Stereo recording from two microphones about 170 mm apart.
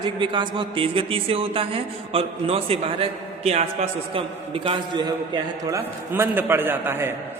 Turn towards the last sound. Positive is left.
turn(degrees=-15)  # may be behind; listen again after turning